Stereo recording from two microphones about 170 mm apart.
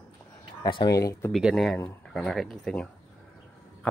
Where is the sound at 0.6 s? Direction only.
25° left (ahead or behind).